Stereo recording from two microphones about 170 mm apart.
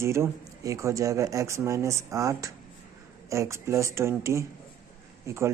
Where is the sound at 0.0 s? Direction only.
15° right (ahead or behind).